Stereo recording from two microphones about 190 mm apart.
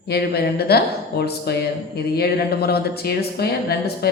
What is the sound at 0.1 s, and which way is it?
Speech, 55° left (ahead or behind).